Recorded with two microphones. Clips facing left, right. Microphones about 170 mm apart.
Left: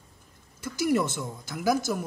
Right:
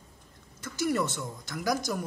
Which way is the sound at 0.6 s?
10° left (ahead or behind).